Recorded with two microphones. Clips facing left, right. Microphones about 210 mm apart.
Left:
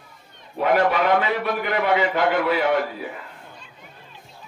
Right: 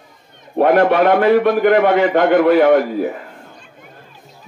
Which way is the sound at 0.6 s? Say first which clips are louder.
Right 7 dB; 55° right (ahead or behind).